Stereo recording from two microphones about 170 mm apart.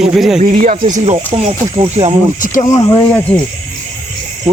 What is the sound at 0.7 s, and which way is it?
Speech, 35° right (ahead or behind).